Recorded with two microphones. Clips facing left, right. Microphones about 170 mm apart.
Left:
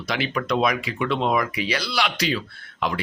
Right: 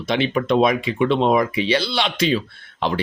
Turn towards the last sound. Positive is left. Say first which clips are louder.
# right 4 dB
turn(degrees=-30)  # may be behind; listen again after turning